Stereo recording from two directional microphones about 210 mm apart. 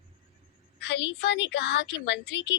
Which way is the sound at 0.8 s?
55° left (ahead or behind).